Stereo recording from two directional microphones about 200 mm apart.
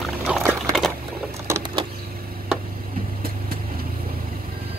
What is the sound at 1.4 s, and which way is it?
Vehicle, 20° right (ahead or behind).